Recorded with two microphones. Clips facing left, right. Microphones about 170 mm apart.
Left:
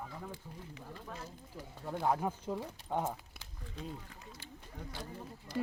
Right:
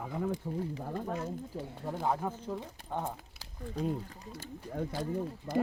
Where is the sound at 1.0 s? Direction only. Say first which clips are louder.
Right 12 dB; 50° right (ahead or behind).